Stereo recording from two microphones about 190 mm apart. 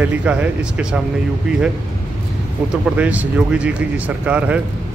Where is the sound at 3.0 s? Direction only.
10° right (ahead or behind).